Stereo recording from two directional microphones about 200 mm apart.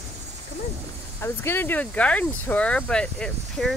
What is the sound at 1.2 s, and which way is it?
Speech, 10° left (ahead or behind).